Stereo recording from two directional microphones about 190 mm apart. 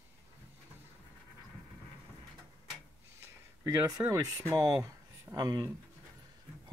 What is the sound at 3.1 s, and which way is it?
Speech, 15° right (ahead or behind).